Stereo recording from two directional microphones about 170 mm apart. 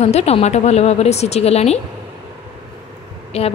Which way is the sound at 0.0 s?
40° left (ahead or behind).